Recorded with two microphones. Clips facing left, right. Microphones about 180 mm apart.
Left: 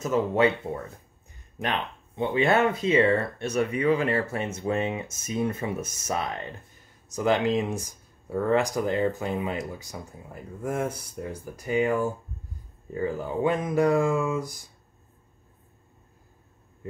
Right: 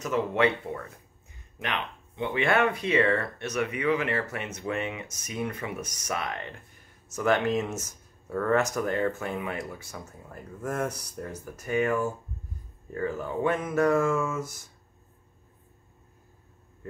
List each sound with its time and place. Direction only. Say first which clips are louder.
0.7 s speech: left 3 dB; 25° left (ahead or behind)